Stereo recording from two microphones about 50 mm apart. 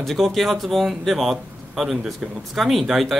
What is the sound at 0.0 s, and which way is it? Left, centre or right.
Speech, centre.